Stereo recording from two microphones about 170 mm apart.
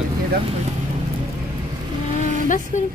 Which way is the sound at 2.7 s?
45° left (ahead or behind).